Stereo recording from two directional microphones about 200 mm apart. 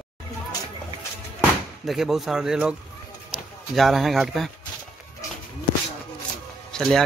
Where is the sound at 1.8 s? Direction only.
Centre (ahead or behind).